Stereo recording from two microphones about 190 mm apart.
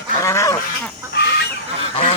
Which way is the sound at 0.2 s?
15° left (ahead or behind).